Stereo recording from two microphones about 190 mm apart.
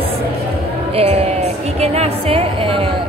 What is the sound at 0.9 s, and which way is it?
A woman's voice, 35° right (ahead or behind).